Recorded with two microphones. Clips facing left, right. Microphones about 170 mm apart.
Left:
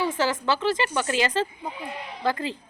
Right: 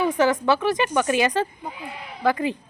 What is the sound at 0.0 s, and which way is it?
A child's voice, 15° right (ahead or behind).